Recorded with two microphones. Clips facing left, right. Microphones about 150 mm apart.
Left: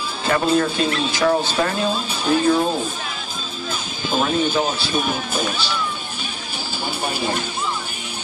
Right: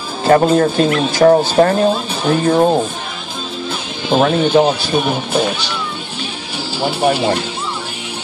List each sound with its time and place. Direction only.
0.2 s speech: 45° right (ahead or behind)
4.1 s speech: 55° right (ahead or behind)
6.8 s speech: 65° right (ahead or behind)